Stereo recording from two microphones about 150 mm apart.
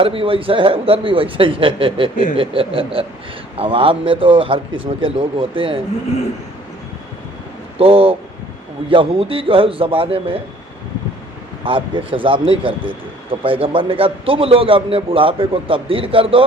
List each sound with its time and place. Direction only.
0.0 s a man's voice: 35° right (ahead or behind)
7.8 s a man's voice: 40° right (ahead or behind)
11.6 s a man's voice: 35° right (ahead or behind)